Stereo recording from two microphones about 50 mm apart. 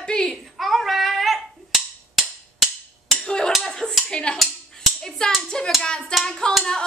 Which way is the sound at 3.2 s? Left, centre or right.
Centre.